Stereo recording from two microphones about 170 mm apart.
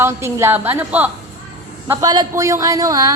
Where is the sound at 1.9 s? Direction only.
20° right (ahead or behind).